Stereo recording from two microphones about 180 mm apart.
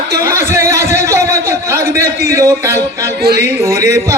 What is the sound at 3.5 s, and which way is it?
Speech, 15° right (ahead or behind).